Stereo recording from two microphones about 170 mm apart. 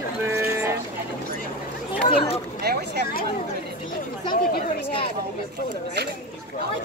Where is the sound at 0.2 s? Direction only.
15° right (ahead or behind).